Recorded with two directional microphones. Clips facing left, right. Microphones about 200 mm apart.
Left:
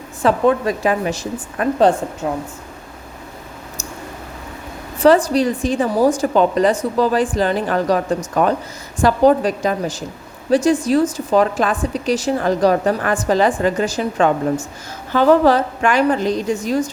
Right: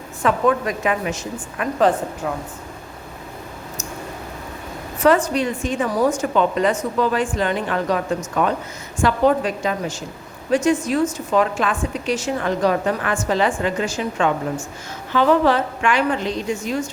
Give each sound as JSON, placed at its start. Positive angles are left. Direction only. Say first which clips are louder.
{"t": 0.2, "sound": "a woman's voice", "louder": "left 3 dB", "side_deg": 30}
{"t": 4.9, "sound": "a woman's voice", "louder": "left 4 dB", "side_deg": 30}